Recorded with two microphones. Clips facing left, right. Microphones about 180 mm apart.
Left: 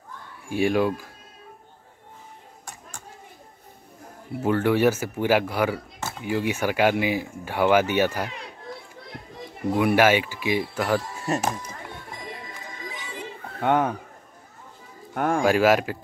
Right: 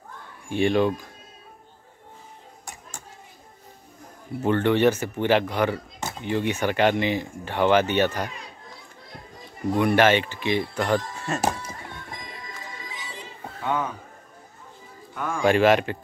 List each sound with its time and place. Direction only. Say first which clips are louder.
0.5 s speech: right 1 dB; 5° left (ahead or behind)
4.4 s speech: even; 5° left (ahead or behind)
9.7 s speech: even; 10° left (ahead or behind)
12.7 s music: left 3 dB; 55° left (ahead or behind)
15.1 s speech: left 6 dB; 60° left (ahead or behind)
15.4 s speech: right 2 dB; 5° left (ahead or behind)